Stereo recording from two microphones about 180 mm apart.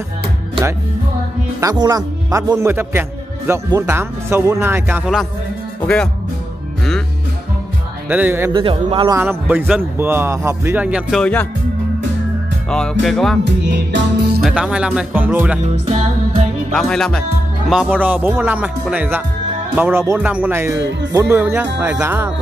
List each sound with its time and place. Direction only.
1.6 s a man's voice: 20° right (ahead or behind)
8.1 s a man's voice: 10° right (ahead or behind)
8.5 s a man's voice: 25° right (ahead or behind)
9.2 s a man's voice: 10° right (ahead or behind); by 11.4 s 5° left (ahead or behind)
12.6 s speech: 5° left (ahead or behind)
13.4 s music: 75° right (ahead or behind)
14.4 s speech: 5° right (ahead or behind)
15.6 s music: 40° right (ahead or behind)
16.7 s a man's voice: 5° left (ahead or behind); by 22.3 s 10° right (ahead or behind)